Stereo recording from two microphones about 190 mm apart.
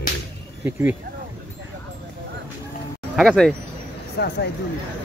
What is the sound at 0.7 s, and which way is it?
Speech, 10° right (ahead or behind).